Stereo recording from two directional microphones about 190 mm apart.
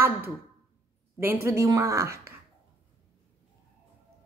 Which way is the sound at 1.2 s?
10° right (ahead or behind).